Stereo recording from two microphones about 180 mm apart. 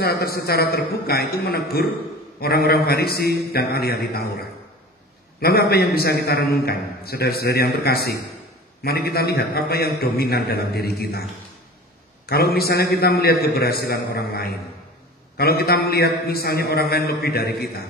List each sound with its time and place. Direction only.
0.0 s a man's voice: 60° left (ahead or behind)
5.4 s a man's voice: 60° left (ahead or behind)
12.3 s a man's voice: 60° left (ahead or behind)